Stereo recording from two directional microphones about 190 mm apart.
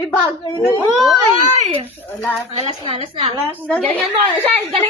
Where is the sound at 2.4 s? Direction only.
30° right (ahead or behind).